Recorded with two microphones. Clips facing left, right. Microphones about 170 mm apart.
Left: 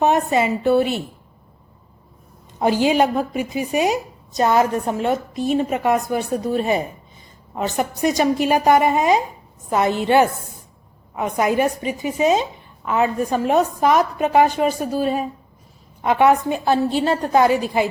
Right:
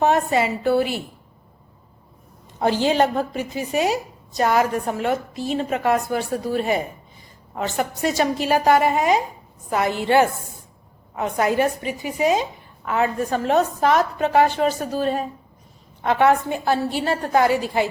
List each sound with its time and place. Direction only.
0.0 s a woman's voice: 20° left (ahead or behind)
2.6 s a woman's voice: 15° left (ahead or behind)